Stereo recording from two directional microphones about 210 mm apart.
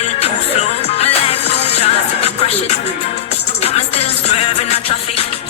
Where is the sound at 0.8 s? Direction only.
30° left (ahead or behind).